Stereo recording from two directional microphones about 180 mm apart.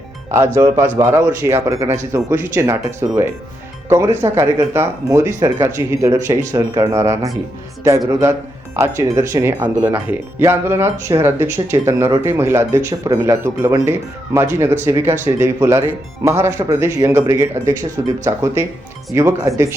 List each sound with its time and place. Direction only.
0.3 s speech: 15° right (ahead or behind)